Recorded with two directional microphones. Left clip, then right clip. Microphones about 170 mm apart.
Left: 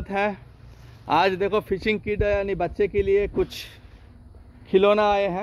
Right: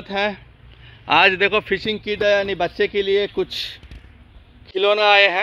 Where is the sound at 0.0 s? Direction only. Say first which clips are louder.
Right 3 dB; 10° left (ahead or behind).